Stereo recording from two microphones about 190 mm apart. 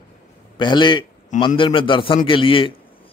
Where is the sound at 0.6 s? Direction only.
25° left (ahead or behind).